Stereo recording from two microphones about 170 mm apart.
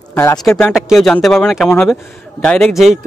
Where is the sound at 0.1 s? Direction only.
15° left (ahead or behind).